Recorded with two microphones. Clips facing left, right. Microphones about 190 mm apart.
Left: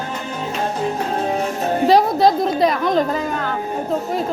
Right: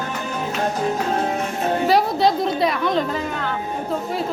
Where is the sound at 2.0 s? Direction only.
45° left (ahead or behind).